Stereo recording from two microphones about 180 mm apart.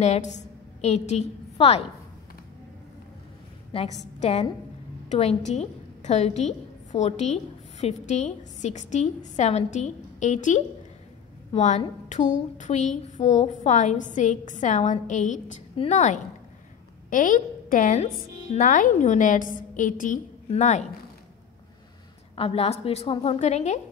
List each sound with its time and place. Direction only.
0.0 s a woman's voice: 40° left (ahead or behind)
4.2 s a woman's voice: 35° left (ahead or behind)
17.1 s a woman's voice: 50° left (ahead or behind)
22.3 s a woman's voice: 30° left (ahead or behind)